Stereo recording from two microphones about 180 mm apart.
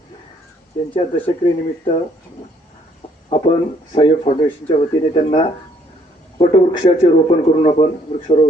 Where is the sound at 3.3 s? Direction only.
35° left (ahead or behind).